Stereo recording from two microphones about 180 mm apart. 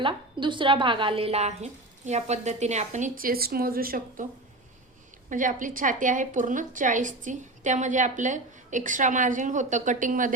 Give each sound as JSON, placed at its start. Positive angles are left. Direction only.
{"t": 0.0, "sound": "a woman's voice", "side_deg": -25}
{"t": 5.3, "sound": "a woman's voice", "side_deg": -45}